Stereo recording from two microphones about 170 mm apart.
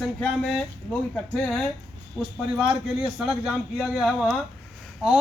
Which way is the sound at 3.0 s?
5° right (ahead or behind).